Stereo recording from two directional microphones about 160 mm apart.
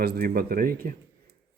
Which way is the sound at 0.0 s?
75° right (ahead or behind).